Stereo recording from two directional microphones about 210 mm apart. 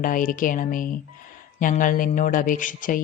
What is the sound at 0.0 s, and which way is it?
Speech, 40° left (ahead or behind).